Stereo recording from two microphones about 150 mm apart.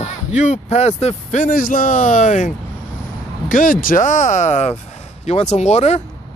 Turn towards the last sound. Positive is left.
turn(degrees=45)  # may be behind; listen again after turning